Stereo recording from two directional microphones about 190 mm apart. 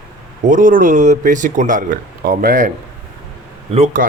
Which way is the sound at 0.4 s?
45° right (ahead or behind).